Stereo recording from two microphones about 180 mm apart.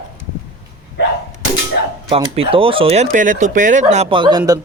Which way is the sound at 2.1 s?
30° right (ahead or behind).